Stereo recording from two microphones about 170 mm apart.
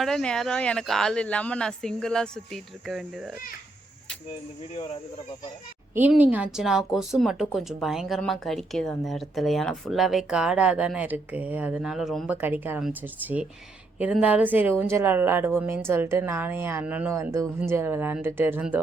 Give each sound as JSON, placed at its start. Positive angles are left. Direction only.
{"t": 0.0, "sound": "speech", "side_deg": 5}
{"t": 4.7, "sound": "speech", "side_deg": 35}
{"t": 5.9, "sound": "speech", "side_deg": -10}